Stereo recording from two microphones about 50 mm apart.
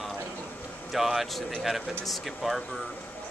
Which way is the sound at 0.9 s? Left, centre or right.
Centre.